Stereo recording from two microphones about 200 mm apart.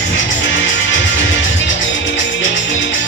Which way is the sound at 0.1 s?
70° left (ahead or behind).